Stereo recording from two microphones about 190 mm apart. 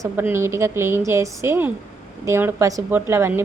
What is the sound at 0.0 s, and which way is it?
A woman's voice, 10° right (ahead or behind).